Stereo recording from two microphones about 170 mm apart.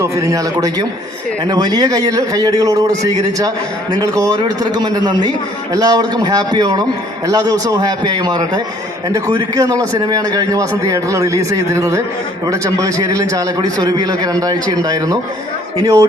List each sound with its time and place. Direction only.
0.0 s a man's voice: 20° right (ahead or behind)